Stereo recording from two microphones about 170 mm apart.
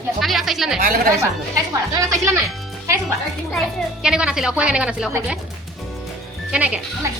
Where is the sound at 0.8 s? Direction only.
60° right (ahead or behind).